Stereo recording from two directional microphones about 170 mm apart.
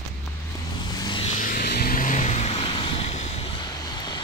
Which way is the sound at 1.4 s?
65° left (ahead or behind).